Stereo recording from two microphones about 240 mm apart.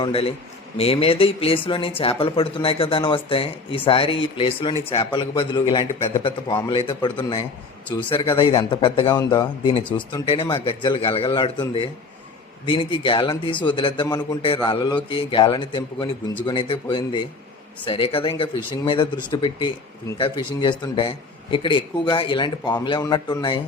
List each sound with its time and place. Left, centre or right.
0.0 s a man's voice: left